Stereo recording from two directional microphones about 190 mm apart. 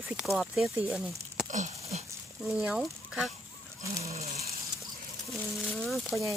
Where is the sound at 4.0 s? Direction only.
35° right (ahead or behind).